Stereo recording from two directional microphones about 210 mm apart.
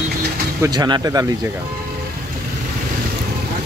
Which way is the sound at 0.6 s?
20° right (ahead or behind).